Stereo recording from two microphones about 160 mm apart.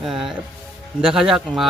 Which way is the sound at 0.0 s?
5° right (ahead or behind).